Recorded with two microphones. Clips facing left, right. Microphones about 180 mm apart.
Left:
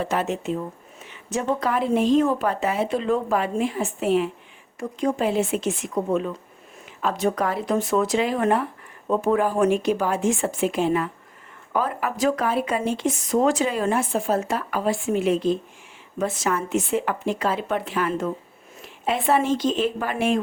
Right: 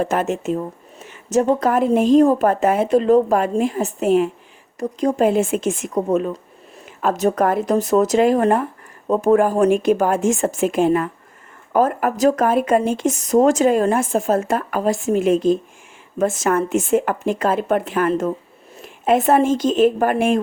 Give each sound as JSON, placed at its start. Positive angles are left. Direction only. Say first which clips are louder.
{"t": 0.0, "sound": "speech", "louder": "right 5 dB", "side_deg": -50}